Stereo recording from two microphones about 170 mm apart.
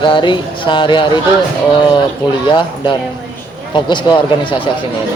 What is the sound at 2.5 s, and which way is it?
Speech, 30° left (ahead or behind).